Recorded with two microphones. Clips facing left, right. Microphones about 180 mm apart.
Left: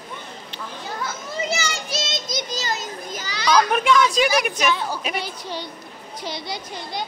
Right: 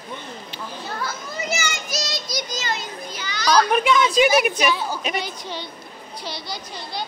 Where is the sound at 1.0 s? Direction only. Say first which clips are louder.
Left 3 dB; 30° left (ahead or behind).